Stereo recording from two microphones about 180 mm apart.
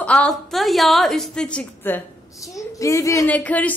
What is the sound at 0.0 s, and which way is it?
A woman's voice, 5° left (ahead or behind).